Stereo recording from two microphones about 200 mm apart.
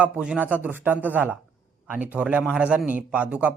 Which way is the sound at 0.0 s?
5° right (ahead or behind).